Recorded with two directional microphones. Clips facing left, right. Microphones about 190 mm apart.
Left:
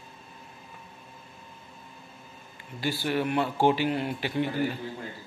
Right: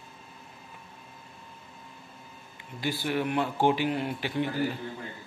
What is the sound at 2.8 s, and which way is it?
Speech, 20° right (ahead or behind).